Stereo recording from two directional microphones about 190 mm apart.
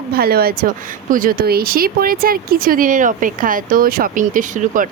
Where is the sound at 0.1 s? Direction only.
55° right (ahead or behind).